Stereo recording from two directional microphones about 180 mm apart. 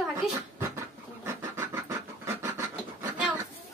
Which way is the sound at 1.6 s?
15° right (ahead or behind).